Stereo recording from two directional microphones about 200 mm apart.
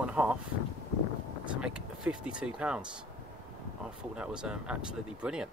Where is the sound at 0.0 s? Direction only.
5° right (ahead or behind).